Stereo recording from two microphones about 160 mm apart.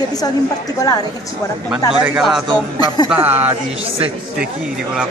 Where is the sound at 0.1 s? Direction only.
25° left (ahead or behind).